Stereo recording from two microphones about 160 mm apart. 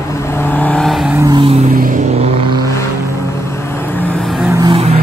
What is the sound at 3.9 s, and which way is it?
Vehicle, 10° left (ahead or behind).